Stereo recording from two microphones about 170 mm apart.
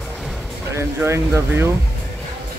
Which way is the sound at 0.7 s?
15° right (ahead or behind).